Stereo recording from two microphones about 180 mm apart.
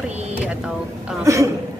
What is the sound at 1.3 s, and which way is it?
Speech, 15° right (ahead or behind).